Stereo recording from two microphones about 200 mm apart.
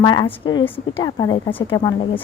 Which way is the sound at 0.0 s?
25° left (ahead or behind).